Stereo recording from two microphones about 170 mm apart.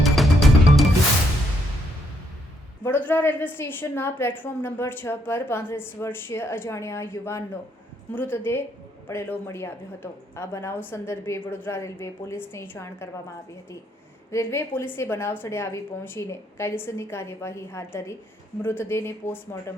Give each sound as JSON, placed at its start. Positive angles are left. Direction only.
{"t": 0.0, "sound": "music", "side_deg": 0}
{"t": 2.8, "sound": "a woman's voice", "side_deg": 10}
{"t": 14.3, "sound": "a woman's voice", "side_deg": 15}